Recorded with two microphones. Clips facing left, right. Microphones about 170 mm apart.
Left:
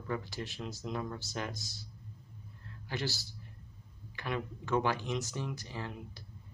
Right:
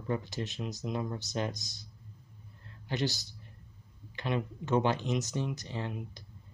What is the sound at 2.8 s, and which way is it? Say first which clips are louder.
Speech: right 5 dB; 20° right (ahead or behind).